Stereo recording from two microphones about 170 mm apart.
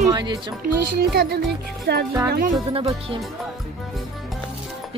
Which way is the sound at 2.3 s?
55° right (ahead or behind).